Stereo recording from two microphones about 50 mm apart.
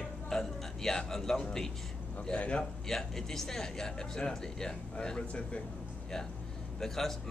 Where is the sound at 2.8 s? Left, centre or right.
Centre.